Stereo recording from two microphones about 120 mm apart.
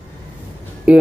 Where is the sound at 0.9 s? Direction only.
10° right (ahead or behind).